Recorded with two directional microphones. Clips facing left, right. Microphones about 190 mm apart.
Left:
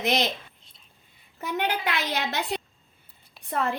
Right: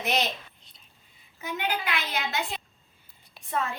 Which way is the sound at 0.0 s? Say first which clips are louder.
Left 3 dB; 90° left.